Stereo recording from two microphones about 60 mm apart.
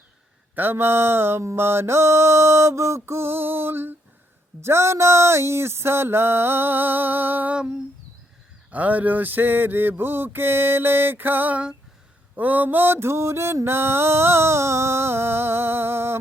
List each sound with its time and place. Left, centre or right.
0.5 s mantra: right
4.6 s mantra: right
7.5 s humming: centre
8.7 s mantra: right